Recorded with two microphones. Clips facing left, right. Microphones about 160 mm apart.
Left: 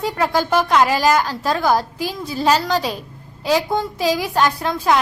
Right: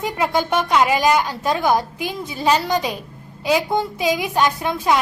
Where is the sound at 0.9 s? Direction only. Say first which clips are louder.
Even; 15° right (ahead or behind).